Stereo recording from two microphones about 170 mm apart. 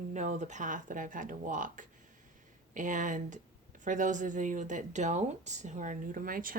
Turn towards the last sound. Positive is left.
turn(degrees=-55)  # may be behind; listen again after turning